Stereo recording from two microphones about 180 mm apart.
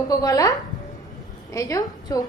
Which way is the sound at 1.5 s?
20° left (ahead or behind).